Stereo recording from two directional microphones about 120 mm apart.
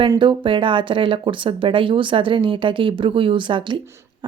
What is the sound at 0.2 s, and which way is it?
Speech, 45° right (ahead or behind).